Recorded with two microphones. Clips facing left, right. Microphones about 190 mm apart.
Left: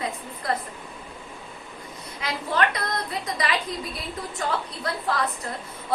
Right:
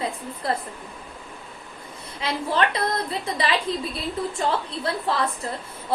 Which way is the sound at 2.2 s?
30° right (ahead or behind).